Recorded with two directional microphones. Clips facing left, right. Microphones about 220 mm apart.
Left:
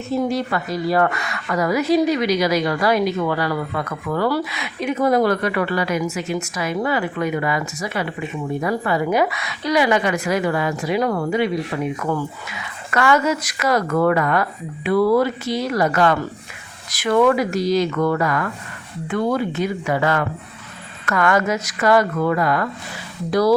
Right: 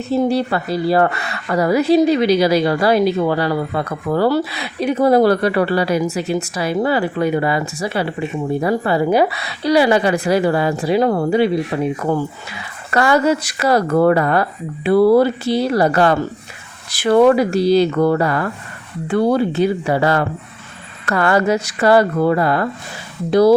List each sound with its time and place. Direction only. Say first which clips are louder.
0.1 s a woman's voice: right 4 dB; 30° right (ahead or behind)